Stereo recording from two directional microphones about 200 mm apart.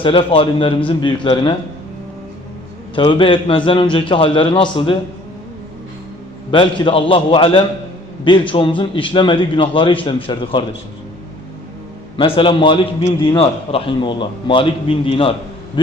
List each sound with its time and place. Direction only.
0.0 s a man's voice: 25° left (ahead or behind)
2.9 s a man's voice: 25° left (ahead or behind)
6.5 s a man's voice: 25° left (ahead or behind)
12.1 s a man's voice: 25° left (ahead or behind)